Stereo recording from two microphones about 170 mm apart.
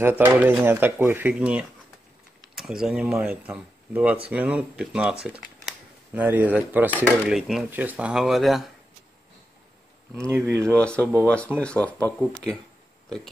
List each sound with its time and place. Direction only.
0.0 s speech: 10° right (ahead or behind)
10.2 s speech: 15° right (ahead or behind)
10.7 s speech: 5° left (ahead or behind)